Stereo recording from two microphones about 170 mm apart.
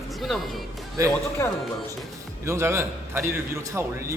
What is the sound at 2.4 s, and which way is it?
A man's voice, 15° right (ahead or behind).